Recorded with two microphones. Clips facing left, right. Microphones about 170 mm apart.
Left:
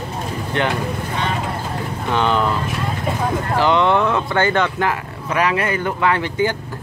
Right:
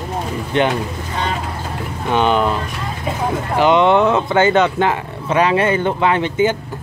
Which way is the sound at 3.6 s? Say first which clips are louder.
Right 4 dB; 20° right (ahead or behind).